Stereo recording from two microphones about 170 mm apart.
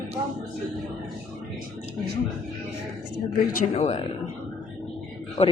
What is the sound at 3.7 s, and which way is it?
Speech, 35° left (ahead or behind).